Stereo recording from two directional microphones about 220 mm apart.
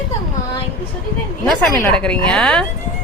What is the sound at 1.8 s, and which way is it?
Speech, 5° left (ahead or behind).